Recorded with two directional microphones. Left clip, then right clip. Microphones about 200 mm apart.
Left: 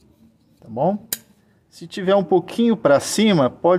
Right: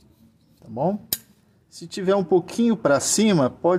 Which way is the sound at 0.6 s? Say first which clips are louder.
Left 4 dB; 5° left (ahead or behind).